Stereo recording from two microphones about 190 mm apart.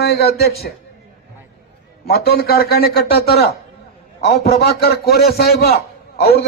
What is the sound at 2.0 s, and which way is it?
A man's voice, 55° left (ahead or behind).